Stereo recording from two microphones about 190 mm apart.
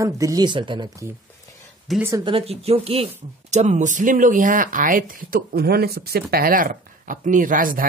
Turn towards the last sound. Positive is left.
turn(degrees=-45)  # may be behind; listen again after turning